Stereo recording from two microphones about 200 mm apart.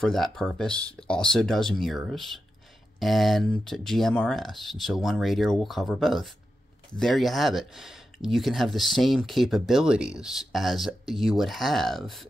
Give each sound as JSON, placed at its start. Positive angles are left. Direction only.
{"t": 0.0, "sound": "speech", "side_deg": 0}